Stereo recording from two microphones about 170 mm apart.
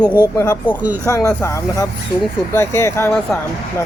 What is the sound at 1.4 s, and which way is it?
Speech, 15° left (ahead or behind).